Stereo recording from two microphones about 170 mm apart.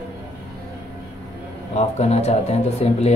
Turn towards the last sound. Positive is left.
turn(degrees=40)  # may be behind; listen again after turning